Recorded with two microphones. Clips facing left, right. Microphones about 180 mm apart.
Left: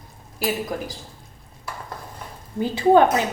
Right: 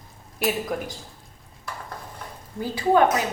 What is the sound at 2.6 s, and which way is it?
Speech, 25° left (ahead or behind).